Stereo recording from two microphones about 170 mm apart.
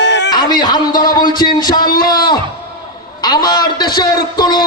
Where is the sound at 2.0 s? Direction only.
25° left (ahead or behind).